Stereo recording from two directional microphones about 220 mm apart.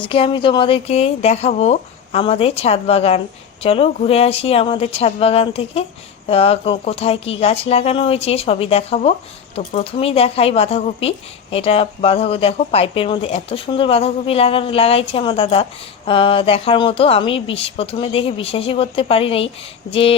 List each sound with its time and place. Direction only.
0.0 s speech: 25° left (ahead or behind)